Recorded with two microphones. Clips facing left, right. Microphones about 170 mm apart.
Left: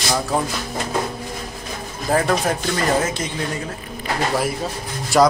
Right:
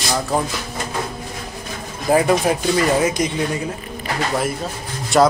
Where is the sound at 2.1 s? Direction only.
10° right (ahead or behind).